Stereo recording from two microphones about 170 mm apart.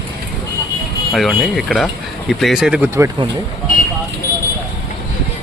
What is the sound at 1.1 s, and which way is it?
Speech, centre (ahead or behind).